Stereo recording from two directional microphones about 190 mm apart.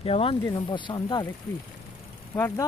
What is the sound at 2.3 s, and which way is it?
Speech, 15° left (ahead or behind).